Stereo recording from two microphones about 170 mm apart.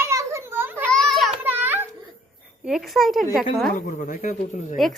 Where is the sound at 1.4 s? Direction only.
10° right (ahead or behind).